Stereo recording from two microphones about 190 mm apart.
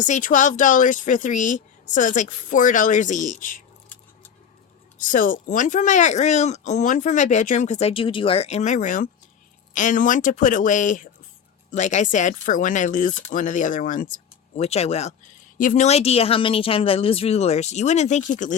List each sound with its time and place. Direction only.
0.0 s speech: 40° left (ahead or behind)
4.9 s speech: 45° left (ahead or behind)